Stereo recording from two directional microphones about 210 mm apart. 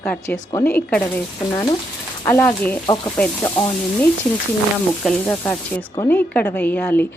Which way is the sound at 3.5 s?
25° left (ahead or behind).